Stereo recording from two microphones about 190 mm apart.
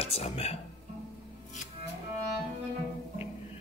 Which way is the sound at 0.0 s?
30° left (ahead or behind).